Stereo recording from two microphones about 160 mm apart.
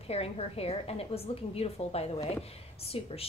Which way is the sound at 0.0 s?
40° left (ahead or behind).